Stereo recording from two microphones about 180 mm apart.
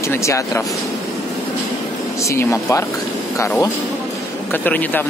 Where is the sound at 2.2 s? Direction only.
15° left (ahead or behind).